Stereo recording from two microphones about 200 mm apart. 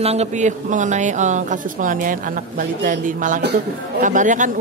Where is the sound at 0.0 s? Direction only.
30° right (ahead or behind).